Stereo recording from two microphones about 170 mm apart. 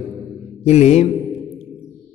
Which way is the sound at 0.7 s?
40° left (ahead or behind).